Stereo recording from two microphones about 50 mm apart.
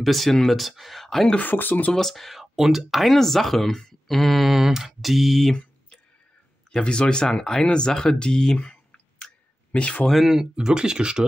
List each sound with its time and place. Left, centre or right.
0.0 s speech: centre
1.4 s speech: left
1.9 s speech: centre
2.4 s speech: centre
5.5 s clicking: centre
6.7 s speech: centre
9.2 s a sound: left
10.2 s speech: centre
10.5 s speech: centre